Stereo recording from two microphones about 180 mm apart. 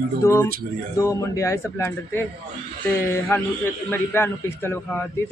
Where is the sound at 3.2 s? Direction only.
10° left (ahead or behind).